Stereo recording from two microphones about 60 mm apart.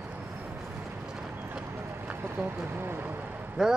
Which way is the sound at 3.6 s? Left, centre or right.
Centre.